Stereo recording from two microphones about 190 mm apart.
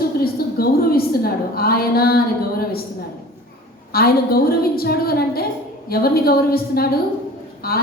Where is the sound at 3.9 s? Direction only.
55° left (ahead or behind).